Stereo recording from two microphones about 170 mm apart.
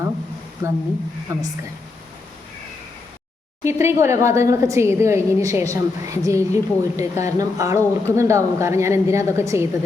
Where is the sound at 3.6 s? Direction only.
15° right (ahead or behind).